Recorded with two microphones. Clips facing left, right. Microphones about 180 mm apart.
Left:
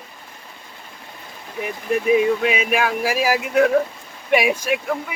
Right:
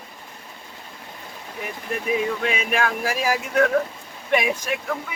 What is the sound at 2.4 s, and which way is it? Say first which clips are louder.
Speech: left 3 dB; 10° left (ahead or behind).